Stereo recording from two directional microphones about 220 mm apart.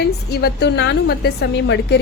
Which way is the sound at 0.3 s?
45° left (ahead or behind).